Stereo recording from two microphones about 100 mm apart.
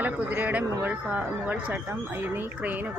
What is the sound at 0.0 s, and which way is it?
A man's voice, 15° right (ahead or behind).